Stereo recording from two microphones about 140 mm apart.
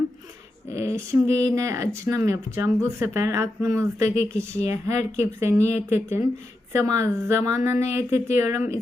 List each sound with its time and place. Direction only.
0.7 s speech: 20° right (ahead or behind)